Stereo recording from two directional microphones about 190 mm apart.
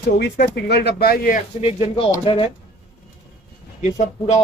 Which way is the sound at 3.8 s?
35° left (ahead or behind).